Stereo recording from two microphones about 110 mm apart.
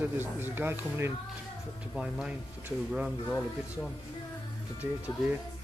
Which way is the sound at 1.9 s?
5° right (ahead or behind).